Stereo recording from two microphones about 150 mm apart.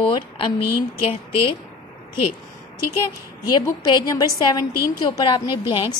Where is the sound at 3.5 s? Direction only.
30° left (ahead or behind).